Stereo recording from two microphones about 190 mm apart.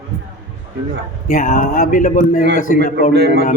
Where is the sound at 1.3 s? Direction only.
45° left (ahead or behind).